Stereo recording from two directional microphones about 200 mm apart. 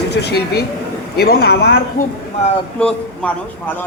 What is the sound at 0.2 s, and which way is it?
A man's voice, 55° left (ahead or behind).